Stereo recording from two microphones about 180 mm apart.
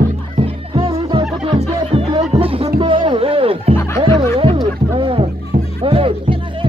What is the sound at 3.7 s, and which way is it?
Music, 15° left (ahead or behind).